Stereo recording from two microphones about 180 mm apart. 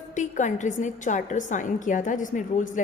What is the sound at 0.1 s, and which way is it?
A woman's voice, 45° left (ahead or behind).